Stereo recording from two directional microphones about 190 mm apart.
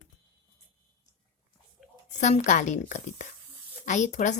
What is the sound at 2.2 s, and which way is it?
A woman's voice, 40° left (ahead or behind).